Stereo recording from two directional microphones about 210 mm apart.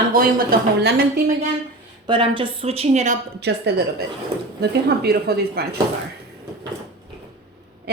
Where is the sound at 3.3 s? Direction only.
50° right (ahead or behind).